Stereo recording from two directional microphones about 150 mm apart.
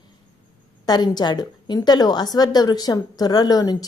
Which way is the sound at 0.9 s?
30° left (ahead or behind).